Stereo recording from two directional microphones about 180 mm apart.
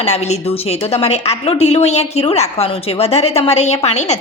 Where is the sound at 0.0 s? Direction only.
35° left (ahead or behind).